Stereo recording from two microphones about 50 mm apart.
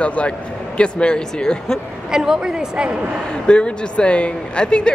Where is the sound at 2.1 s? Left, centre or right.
Centre.